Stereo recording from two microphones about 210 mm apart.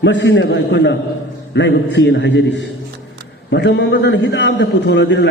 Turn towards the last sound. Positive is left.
turn(degrees=55)  # may be behind; listen again after turning